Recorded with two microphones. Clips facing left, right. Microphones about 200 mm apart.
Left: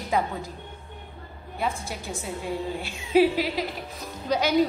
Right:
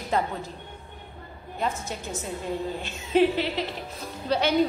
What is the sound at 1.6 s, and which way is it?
Music, 10° left (ahead or behind).